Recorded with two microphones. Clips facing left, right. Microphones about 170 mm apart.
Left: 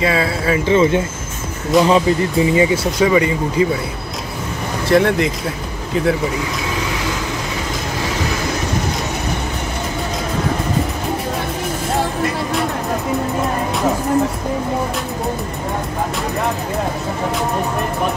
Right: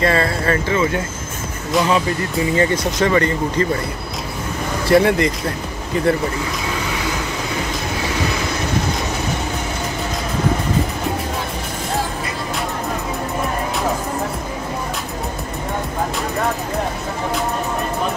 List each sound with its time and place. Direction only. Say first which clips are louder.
0.0 s speech: even; 5° left (ahead or behind)
0.7 s speech: left 5 dB; 25° left (ahead or behind)
1.7 s speech: left 5 dB; centre (ahead or behind)
4.8 s speech: even; centre (ahead or behind)